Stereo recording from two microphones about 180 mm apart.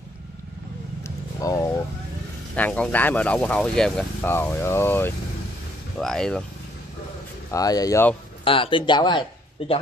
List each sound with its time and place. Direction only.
1.0 s vehicle: 20° left (ahead or behind)
2.5 s speech: 10° left (ahead or behind)
7.5 s speech: 20° left (ahead or behind)
8.5 s speech: 30° left (ahead or behind)